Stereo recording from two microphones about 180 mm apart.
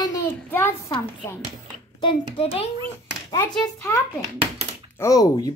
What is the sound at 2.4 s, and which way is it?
Speech, 35° left (ahead or behind).